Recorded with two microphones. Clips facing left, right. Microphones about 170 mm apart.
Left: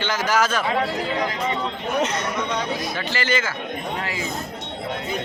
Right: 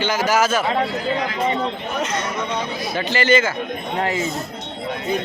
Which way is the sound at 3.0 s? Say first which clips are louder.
Right 10 dB; 20° right (ahead or behind).